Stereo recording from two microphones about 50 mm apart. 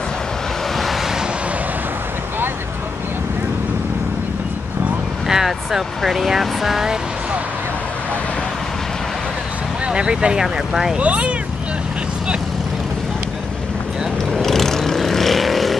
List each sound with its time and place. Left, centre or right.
5.3 s speech: centre
9.8 s speech: centre
10.4 s speech: centre
11.0 s speech: right
14.3 s vehicle: centre